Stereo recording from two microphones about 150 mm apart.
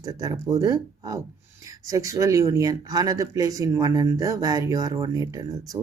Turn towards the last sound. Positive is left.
turn(degrees=-25)  # may be behind; listen again after turning